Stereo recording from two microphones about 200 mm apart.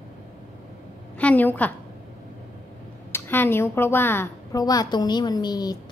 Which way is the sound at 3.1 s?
10° left (ahead or behind).